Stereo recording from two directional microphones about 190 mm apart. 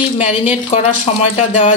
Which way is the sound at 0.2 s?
35° left (ahead or behind).